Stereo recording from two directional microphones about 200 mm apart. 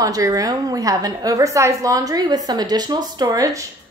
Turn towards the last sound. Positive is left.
turn(degrees=-15)  # may be behind; listen again after turning